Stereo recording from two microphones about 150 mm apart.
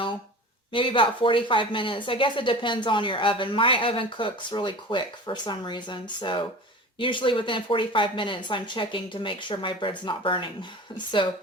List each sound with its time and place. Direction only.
0.7 s speech: 35° left (ahead or behind)